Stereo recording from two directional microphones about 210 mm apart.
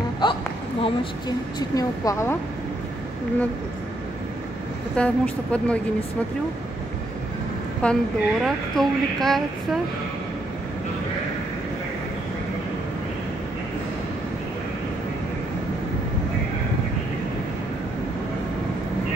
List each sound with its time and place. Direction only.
0.2 s a sound: 20° left (ahead or behind)
1.6 s speech: 15° left (ahead or behind)
4.9 s a woman's voice: 5° left (ahead or behind)
7.8 s a woman's voice: centre (ahead or behind)